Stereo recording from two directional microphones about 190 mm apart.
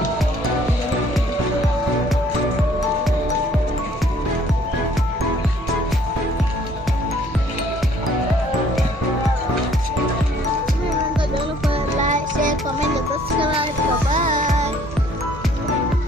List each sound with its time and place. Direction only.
11.7 s music: 40° right (ahead or behind)
14.1 s music: 45° right (ahead or behind)